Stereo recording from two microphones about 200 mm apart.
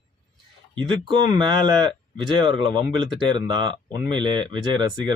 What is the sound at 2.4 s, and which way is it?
Speech, 25° right (ahead or behind).